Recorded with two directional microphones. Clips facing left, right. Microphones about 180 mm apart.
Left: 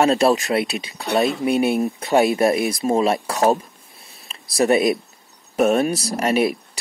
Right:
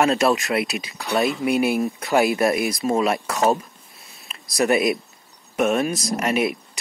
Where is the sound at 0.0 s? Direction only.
35° left (ahead or behind).